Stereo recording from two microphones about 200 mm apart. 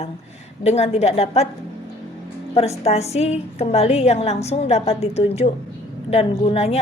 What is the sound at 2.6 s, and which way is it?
A woman's voice, 30° left (ahead or behind).